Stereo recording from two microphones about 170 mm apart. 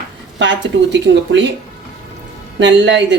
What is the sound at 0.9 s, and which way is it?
Speech, 90° right.